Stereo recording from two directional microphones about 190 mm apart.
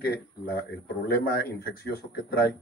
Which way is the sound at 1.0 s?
55° left (ahead or behind).